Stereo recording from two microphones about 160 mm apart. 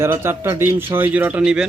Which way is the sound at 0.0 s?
15° right (ahead or behind).